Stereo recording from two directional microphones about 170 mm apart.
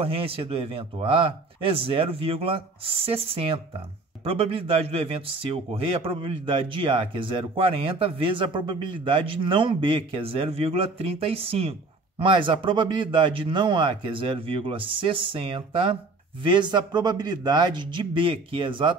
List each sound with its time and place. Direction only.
0.0 s a man's voice: 35° right (ahead or behind)